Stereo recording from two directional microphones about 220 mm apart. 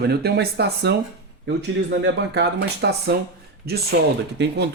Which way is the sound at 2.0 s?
50° right (ahead or behind).